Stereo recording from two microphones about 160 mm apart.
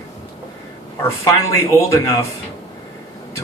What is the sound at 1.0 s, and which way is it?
Speech, 20° left (ahead or behind).